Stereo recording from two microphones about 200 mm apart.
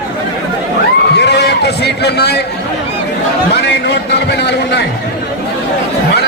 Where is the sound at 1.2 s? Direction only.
55° left (ahead or behind).